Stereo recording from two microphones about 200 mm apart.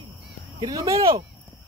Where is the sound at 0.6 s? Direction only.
20° right (ahead or behind).